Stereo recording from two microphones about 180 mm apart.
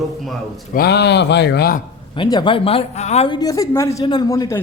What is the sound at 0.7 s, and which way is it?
Speech, 60° left (ahead or behind).